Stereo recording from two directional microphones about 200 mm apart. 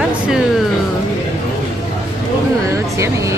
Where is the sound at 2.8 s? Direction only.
15° right (ahead or behind).